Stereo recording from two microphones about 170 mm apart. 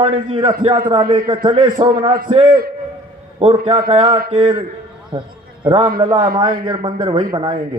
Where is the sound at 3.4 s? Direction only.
30° right (ahead or behind).